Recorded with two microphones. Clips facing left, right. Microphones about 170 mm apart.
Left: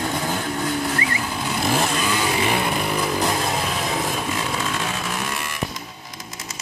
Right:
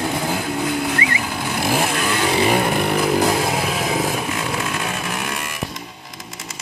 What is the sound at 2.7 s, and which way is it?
Chainsaw, 60° right (ahead or behind).